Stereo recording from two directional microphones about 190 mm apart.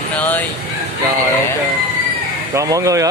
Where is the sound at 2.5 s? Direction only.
15° right (ahead or behind).